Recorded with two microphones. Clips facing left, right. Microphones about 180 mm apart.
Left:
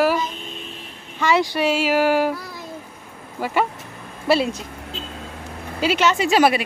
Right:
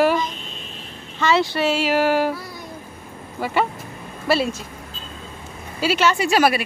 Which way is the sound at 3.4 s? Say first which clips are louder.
Even; 10° left (ahead or behind).